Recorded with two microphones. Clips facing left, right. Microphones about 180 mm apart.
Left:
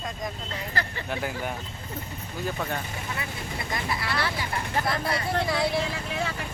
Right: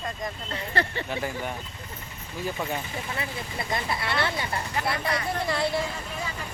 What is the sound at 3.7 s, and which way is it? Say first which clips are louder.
Speech: right 2 dB; 25° right (ahead or behind).